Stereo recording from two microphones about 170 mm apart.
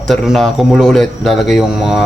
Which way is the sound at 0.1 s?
Centre (ahead or behind).